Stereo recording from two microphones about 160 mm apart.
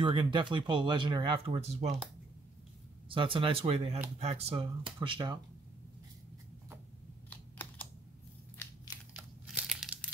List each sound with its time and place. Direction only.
0.0 s speech: 30° right (ahead or behind)
3.1 s speech: 35° right (ahead or behind)
7.2 s computer keyboard: 10° left (ahead or behind)
9.1 s crumpling: 5° right (ahead or behind)